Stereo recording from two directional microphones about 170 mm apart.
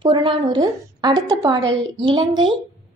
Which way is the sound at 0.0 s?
30° right (ahead or behind).